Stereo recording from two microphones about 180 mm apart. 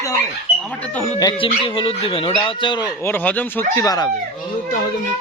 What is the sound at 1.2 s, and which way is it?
Speech, 30° left (ahead or behind).